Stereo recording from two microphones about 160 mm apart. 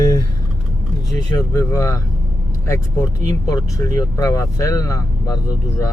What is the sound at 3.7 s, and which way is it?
Speech, 20° left (ahead or behind).